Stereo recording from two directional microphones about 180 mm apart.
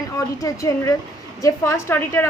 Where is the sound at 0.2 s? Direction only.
20° left (ahead or behind).